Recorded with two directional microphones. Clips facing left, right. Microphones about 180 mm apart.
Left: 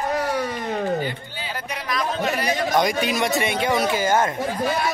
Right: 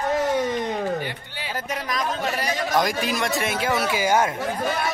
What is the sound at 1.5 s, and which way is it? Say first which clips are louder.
Speech: right 1 dB; 40° right (ahead or behind).